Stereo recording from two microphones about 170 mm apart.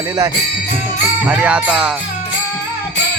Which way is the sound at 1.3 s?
5° right (ahead or behind).